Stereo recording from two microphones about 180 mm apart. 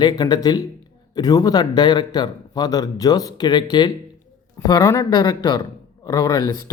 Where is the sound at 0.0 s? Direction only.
25° left (ahead or behind).